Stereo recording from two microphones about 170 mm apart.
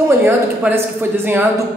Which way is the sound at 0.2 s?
10° right (ahead or behind).